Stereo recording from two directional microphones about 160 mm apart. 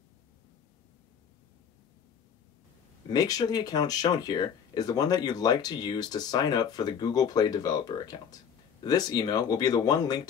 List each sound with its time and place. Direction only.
3.1 s speech: 25° left (ahead or behind)